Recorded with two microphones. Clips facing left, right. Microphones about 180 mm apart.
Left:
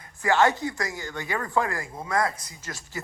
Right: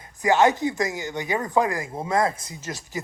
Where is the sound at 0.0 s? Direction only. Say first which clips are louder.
Right 3 dB; 20° right (ahead or behind).